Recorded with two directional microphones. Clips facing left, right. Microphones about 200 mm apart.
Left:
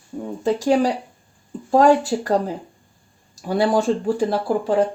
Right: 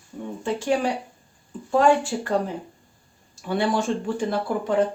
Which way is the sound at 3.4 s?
35° left (ahead or behind).